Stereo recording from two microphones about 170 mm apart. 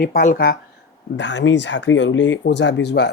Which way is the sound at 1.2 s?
90° left.